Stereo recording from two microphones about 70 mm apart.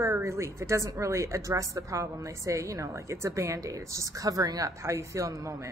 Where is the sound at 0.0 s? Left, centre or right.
Right.